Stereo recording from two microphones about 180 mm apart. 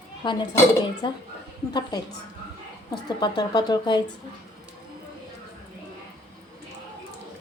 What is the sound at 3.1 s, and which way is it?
Speech, 25° left (ahead or behind).